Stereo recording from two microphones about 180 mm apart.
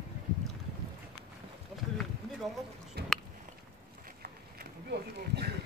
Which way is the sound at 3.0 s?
65° right (ahead or behind).